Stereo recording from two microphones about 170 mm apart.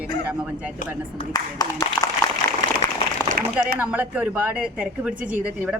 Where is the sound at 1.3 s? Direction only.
20° left (ahead or behind).